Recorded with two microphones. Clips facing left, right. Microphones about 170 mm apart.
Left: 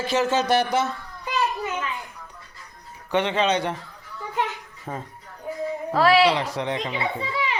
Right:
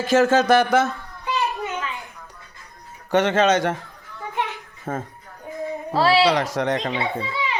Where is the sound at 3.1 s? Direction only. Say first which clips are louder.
Right 4 dB; 45° right (ahead or behind).